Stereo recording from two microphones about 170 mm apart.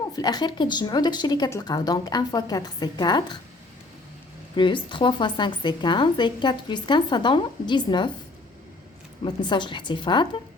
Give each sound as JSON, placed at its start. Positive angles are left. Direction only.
{"t": 0.0, "sound": "a woman's voice", "side_deg": 25}
{"t": 4.5, "sound": "a woman's voice", "side_deg": 30}
{"t": 9.2, "sound": "a woman's voice", "side_deg": 25}